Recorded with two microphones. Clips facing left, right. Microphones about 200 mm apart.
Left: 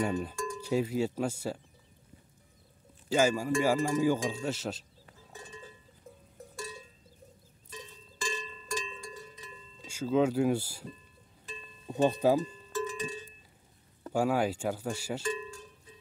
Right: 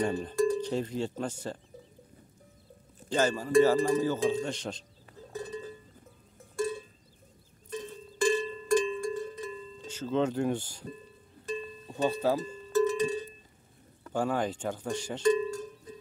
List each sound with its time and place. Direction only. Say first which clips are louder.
0.0 s speech: right 5 dB; 10° left (ahead or behind)
3.1 s speech: left 1 dB; 10° left (ahead or behind)
5.3 s cowbell: right 11 dB; 40° right (ahead or behind)
6.5 s cowbell: right 12 dB; 55° right (ahead or behind)
7.7 s music: right 10 dB; 55° right (ahead or behind)
9.8 s speech: left 2 dB; 10° left (ahead or behind)
11.9 s speech: left 2 dB; 20° left (ahead or behind)
12.4 s music: right 9 dB; 40° right (ahead or behind)
14.1 s speech: left 2 dB; 10° left (ahead or behind)
15.2 s cowbell: right 10 dB; 40° right (ahead or behind)